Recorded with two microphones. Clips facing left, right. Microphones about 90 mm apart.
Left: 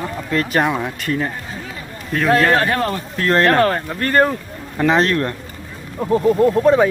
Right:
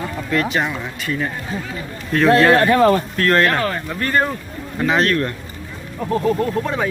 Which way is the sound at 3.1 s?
15° left (ahead or behind).